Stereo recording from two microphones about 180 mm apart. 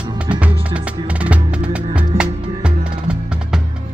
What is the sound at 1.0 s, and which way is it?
Music, 5° right (ahead or behind).